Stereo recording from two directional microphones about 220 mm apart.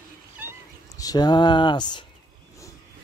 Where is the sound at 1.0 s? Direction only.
15° left (ahead or behind).